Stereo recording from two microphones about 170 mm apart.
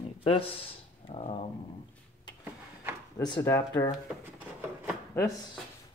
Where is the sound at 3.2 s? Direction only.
25° left (ahead or behind).